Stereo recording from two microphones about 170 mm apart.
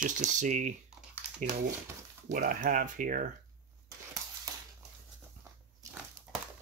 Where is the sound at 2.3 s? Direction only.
50° right (ahead or behind).